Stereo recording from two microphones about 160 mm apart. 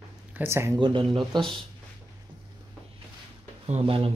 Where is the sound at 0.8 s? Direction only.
30° right (ahead or behind).